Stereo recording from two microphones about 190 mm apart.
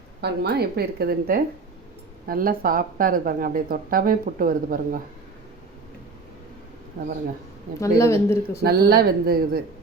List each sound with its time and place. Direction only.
0.2 s a woman's voice: 60° right (ahead or behind)
7.8 s a woman's voice: 15° left (ahead or behind)
8.6 s speech: 55° right (ahead or behind)